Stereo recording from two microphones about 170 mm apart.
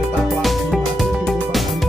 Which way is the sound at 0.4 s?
Centre (ahead or behind).